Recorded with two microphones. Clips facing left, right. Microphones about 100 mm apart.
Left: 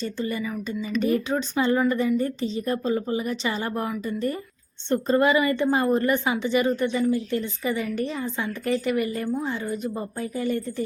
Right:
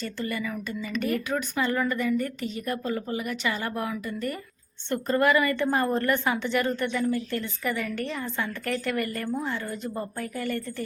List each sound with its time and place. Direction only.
0.0 s a woman's voice: 20° left (ahead or behind)